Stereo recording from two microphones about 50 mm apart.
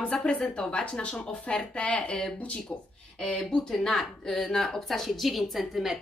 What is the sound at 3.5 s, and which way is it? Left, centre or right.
Speech, centre.